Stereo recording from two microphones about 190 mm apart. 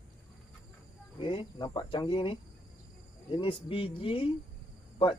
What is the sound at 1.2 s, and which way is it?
Speech, 25° left (ahead or behind).